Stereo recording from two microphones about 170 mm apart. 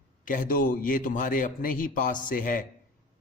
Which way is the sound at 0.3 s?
55° left (ahead or behind).